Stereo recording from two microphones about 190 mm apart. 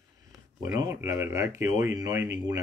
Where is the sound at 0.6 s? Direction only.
10° right (ahead or behind).